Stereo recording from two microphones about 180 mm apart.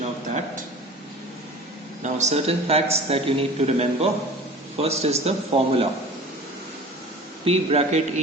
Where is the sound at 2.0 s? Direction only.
40° right (ahead or behind).